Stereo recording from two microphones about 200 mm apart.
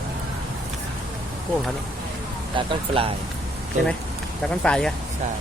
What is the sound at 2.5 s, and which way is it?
Speech, 25° right (ahead or behind).